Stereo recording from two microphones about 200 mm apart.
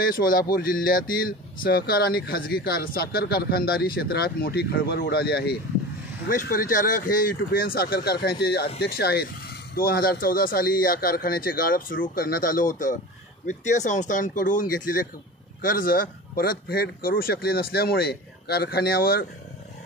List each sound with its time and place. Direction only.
0.0 s speech: 45° left (ahead or behind)